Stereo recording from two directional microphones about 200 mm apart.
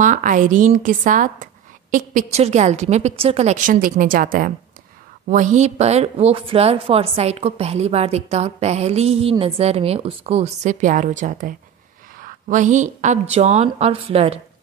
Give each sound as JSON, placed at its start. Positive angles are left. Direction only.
{"t": 0.0, "sound": "speech", "side_deg": -40}